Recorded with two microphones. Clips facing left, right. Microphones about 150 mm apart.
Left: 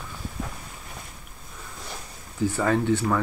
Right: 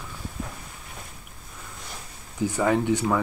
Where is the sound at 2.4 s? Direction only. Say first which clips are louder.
Even; 15° right (ahead or behind).